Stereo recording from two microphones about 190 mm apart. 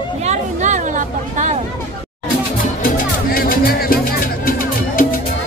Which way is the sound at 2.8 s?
50° left (ahead or behind).